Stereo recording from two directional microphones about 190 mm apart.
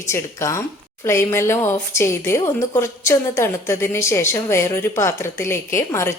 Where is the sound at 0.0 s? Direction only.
15° left (ahead or behind).